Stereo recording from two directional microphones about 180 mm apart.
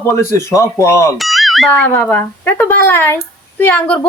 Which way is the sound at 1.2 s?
Centre (ahead or behind).